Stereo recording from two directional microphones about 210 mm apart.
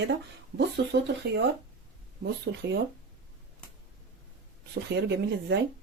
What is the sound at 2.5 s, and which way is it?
Speech, 55° right (ahead or behind).